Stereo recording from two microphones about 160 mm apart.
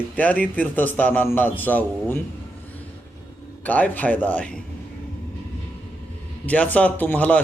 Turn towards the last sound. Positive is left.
turn(degrees=10)  # may be behind; listen again after turning